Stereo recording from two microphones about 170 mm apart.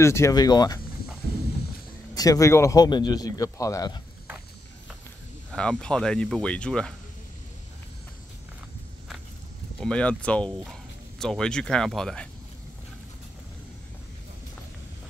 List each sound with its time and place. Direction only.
0.0 s a man's voice: 15° left (ahead or behind)
2.1 s a man's voice: 20° left (ahead or behind)
5.5 s speech: 5° left (ahead or behind)
9.8 s speech: 5° left (ahead or behind)